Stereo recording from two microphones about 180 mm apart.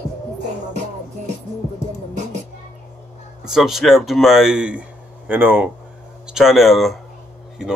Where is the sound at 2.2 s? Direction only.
40° right (ahead or behind).